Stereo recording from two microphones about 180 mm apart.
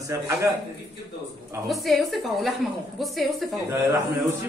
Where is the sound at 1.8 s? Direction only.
Centre (ahead or behind).